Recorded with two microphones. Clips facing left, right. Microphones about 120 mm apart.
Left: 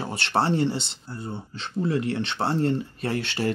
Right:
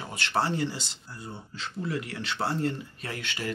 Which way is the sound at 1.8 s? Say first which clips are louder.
Left 8 dB; 25° left (ahead or behind).